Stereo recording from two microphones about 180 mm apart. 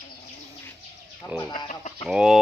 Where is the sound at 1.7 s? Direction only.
40° left (ahead or behind).